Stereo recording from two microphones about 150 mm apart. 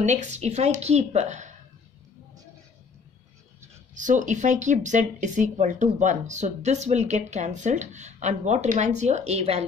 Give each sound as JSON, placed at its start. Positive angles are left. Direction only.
{"t": 0.0, "sound": "speech", "side_deg": -50}
{"t": 3.9, "sound": "speech", "side_deg": -55}